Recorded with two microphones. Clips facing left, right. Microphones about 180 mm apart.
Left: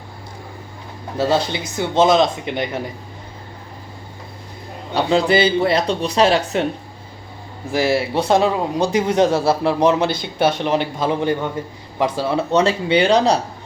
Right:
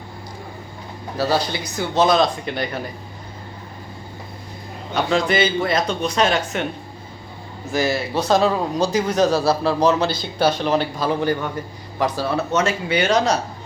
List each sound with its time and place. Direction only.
1.1 s a man's voice: 25° left (ahead or behind)
4.9 s speech: 30° left (ahead or behind)
7.7 s a man's voice: 30° left (ahead or behind)